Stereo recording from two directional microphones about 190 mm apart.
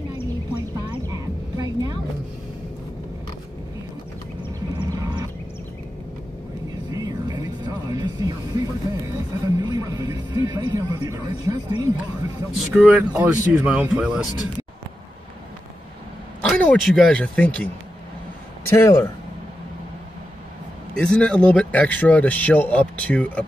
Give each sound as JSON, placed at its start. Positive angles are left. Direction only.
{"t": 1.6, "sound": "a sound", "side_deg": -20}
{"t": 4.8, "sound": "a sound", "side_deg": -20}
{"t": 6.9, "sound": "music", "side_deg": -20}
{"t": 12.5, "sound": "speech", "side_deg": -5}
{"t": 16.4, "sound": "speech", "side_deg": 5}
{"t": 18.7, "sound": "speech", "side_deg": 15}
{"t": 21.0, "sound": "speech", "side_deg": 5}